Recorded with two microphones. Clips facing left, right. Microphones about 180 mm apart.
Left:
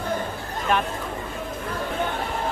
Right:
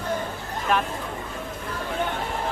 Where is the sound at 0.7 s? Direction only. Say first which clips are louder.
Left 1 dB; centre (ahead or behind).